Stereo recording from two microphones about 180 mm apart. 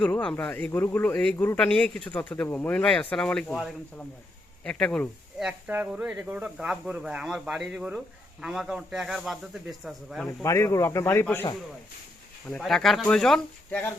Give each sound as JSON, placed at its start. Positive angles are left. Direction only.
{"t": 0.0, "sound": "speech", "side_deg": 5}
{"t": 10.4, "sound": "speech", "side_deg": 15}
{"t": 12.5, "sound": "speech", "side_deg": 5}